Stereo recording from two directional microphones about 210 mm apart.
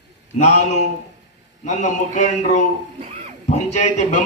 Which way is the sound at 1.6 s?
35° left (ahead or behind).